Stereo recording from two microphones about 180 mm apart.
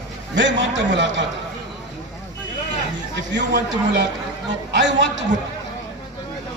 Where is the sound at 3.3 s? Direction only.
80° right.